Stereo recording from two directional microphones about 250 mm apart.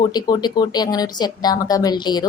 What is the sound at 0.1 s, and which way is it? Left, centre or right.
A woman's voice, centre.